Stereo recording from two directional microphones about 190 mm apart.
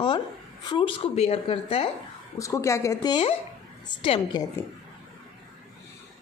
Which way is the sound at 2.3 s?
15° left (ahead or behind).